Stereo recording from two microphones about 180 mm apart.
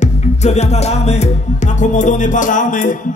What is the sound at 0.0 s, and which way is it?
Music, 40° left (ahead or behind).